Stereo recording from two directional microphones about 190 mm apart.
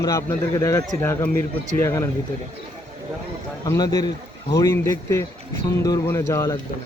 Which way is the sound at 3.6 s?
20° left (ahead or behind).